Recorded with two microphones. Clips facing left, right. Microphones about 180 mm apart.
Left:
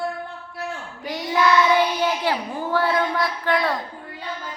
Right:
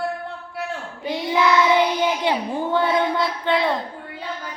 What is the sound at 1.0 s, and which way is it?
Child singing, 20° right (ahead or behind).